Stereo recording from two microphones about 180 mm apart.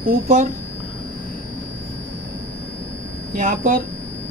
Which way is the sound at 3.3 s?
45° right (ahead or behind).